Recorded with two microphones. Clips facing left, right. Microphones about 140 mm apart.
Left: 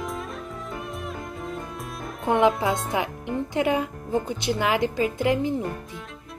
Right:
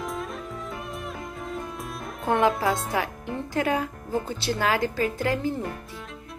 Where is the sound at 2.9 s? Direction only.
20° left (ahead or behind).